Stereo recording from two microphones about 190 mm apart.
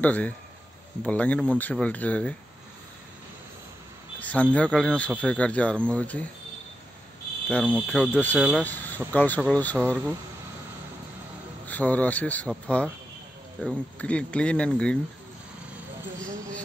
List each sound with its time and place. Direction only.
0.0 s speech: 5° left (ahead or behind)
4.2 s speech: 5° left (ahead or behind)
7.4 s speech: 5° left (ahead or behind)
8.4 s speech: 5° right (ahead or behind)
8.6 s speech: 10° left (ahead or behind)
9.8 s speech: 10° right (ahead or behind)
11.6 s speech: 10° left (ahead or behind)